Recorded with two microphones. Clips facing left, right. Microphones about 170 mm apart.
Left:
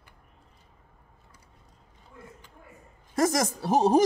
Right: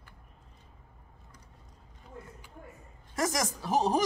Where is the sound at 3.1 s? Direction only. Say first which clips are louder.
Left 6 dB; 40° left (ahead or behind).